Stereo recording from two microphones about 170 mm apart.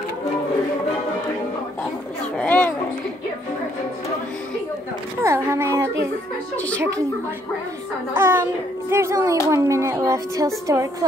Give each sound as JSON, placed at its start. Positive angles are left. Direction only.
{"t": 2.3, "sound": "a sound", "side_deg": 10}
{"t": 5.2, "sound": "a woman's voice", "side_deg": -15}
{"t": 6.5, "sound": "a woman's voice", "side_deg": 10}
{"t": 8.1, "sound": "a woman's voice", "side_deg": -10}